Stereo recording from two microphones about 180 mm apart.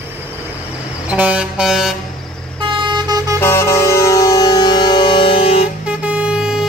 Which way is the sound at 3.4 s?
15° left (ahead or behind).